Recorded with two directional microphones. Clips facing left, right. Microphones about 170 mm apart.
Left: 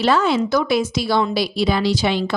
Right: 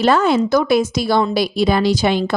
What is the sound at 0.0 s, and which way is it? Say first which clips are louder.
A woman's voice: right 3 dB; 50° right (ahead or behind).